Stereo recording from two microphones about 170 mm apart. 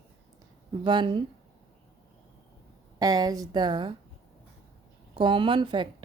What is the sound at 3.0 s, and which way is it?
Speech, 20° right (ahead or behind).